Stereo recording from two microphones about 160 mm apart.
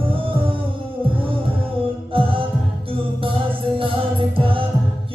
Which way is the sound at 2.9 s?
35° right (ahead or behind).